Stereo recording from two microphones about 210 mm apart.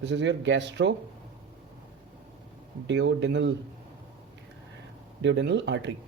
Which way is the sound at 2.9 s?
60° right (ahead or behind).